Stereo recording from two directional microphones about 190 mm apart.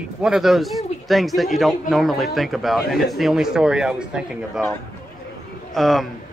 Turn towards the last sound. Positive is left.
turn(degrees=0)  # may be behind; listen again after turning